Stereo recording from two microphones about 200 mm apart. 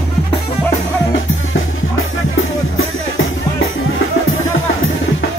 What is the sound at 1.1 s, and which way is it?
Music, 80° left.